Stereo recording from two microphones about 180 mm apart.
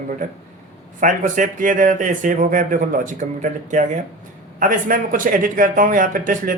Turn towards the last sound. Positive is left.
turn(degrees=-50)  # may be behind; listen again after turning